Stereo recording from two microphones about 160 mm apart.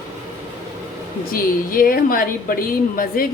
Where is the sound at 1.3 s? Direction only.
65° left (ahead or behind).